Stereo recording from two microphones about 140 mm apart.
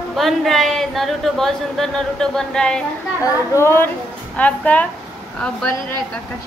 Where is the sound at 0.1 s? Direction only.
Centre (ahead or behind).